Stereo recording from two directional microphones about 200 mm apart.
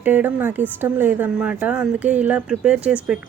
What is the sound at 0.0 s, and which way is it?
Speech, 10° right (ahead or behind).